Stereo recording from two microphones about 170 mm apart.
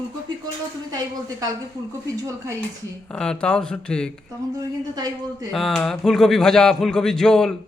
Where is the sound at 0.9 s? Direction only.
25° right (ahead or behind).